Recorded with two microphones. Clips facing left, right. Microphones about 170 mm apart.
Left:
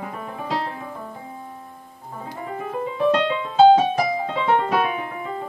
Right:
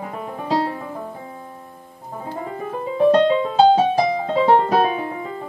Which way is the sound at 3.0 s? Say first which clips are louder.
Right 6 dB; 35° right (ahead or behind).